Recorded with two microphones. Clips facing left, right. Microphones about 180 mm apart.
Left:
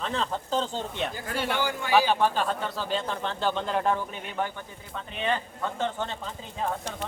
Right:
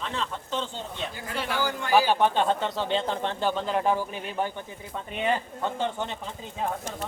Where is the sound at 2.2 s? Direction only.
25° right (ahead or behind).